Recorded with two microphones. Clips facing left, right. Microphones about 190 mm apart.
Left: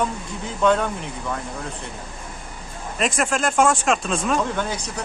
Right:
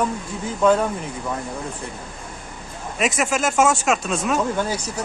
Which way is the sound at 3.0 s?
5° right (ahead or behind).